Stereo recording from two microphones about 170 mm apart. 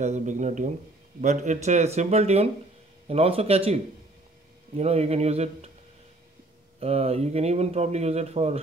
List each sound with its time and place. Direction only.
0.0 s speech: 45° right (ahead or behind)
6.8 s speech: 35° right (ahead or behind)